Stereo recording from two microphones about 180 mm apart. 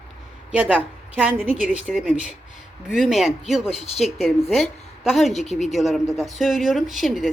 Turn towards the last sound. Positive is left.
turn(degrees=0)  # may be behind; listen again after turning